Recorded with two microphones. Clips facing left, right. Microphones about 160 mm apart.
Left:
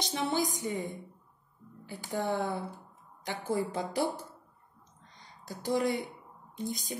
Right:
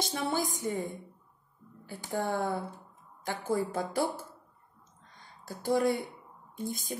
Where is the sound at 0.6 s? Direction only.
20° left (ahead or behind).